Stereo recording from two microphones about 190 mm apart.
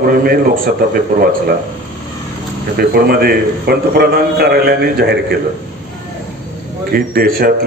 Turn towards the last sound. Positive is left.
turn(degrees=-50)  # may be behind; listen again after turning